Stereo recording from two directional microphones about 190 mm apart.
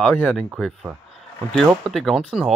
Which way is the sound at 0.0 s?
5° left (ahead or behind).